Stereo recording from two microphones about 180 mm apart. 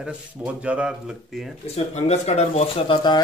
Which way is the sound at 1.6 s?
35° left (ahead or behind).